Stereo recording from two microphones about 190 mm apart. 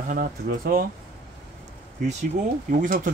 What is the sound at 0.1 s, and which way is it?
Speech, 45° right (ahead or behind).